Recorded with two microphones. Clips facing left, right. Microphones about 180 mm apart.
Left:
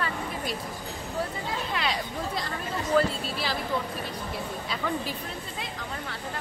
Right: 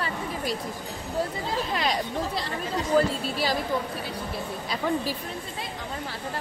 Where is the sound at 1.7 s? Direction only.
40° right (ahead or behind).